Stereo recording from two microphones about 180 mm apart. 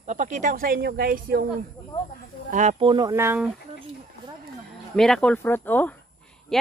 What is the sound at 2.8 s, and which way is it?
Speech, 25° right (ahead or behind).